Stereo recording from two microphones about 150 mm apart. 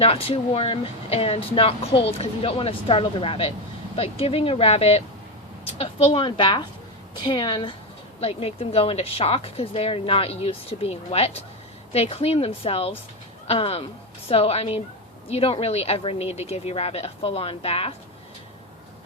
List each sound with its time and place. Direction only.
0.0 s speech: 40° left (ahead or behind)